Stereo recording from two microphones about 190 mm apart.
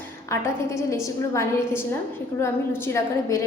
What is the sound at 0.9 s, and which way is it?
A woman's voice, 15° left (ahead or behind).